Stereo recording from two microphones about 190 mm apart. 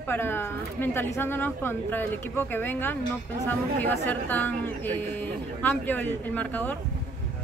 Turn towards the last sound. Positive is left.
turn(degrees=10)  # may be behind; listen again after turning